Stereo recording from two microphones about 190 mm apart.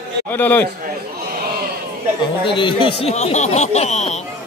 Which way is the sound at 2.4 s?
25° left (ahead or behind).